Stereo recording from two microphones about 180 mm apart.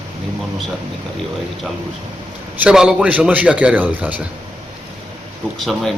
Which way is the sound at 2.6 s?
5° right (ahead or behind).